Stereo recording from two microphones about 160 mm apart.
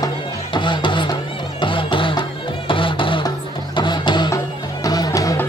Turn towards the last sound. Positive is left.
turn(degrees=20)  # may be behind; listen again after turning